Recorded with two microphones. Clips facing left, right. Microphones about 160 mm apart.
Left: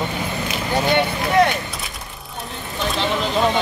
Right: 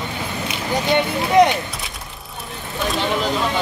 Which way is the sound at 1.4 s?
20° right (ahead or behind).